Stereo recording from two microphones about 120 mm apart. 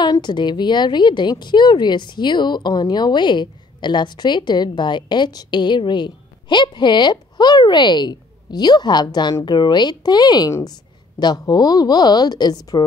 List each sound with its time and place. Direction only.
0.0 s a woman's voice: 40° left (ahead or behind)